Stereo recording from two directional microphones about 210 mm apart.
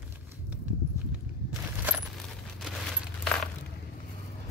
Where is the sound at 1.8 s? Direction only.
10° right (ahead or behind).